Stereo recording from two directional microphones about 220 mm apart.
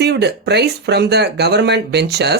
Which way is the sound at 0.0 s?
50° right (ahead or behind).